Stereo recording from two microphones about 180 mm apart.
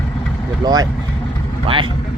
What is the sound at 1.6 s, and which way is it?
Vehicle, 30° right (ahead or behind).